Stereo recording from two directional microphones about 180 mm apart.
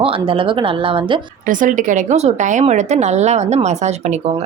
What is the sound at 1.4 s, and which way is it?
Speech, 45° right (ahead or behind).